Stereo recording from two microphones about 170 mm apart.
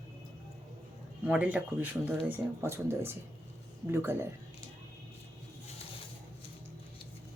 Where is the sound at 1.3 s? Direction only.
5° right (ahead or behind).